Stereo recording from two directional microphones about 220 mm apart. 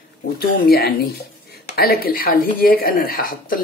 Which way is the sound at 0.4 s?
45° left (ahead or behind).